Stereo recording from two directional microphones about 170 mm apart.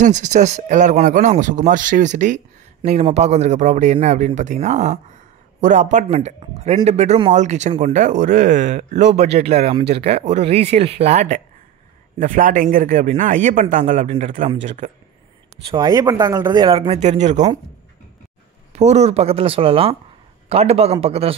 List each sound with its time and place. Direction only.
0.0 s speech: 45° right (ahead or behind)
12.2 s speech: 55° right (ahead or behind)
15.7 s speech: 25° right (ahead or behind)
16.5 s speech: 30° right (ahead or behind)
18.7 s speech: 40° right (ahead or behind)